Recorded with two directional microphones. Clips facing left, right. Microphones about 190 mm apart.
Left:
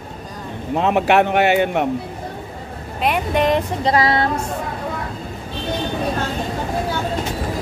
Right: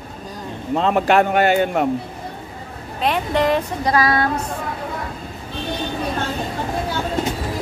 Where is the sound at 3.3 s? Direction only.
20° left (ahead or behind).